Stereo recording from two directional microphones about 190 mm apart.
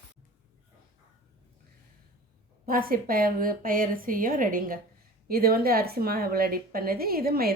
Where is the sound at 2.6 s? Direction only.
50° right (ahead or behind).